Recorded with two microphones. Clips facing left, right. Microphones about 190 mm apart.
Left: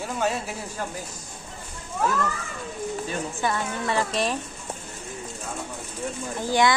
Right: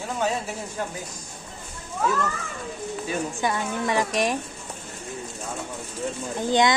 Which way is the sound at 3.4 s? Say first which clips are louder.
Right 1 dB; 15° right (ahead or behind).